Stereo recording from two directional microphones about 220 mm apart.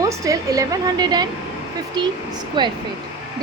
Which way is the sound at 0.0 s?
15° right (ahead or behind).